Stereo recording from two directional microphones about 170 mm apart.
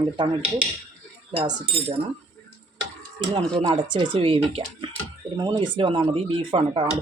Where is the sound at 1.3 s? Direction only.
35° right (ahead or behind).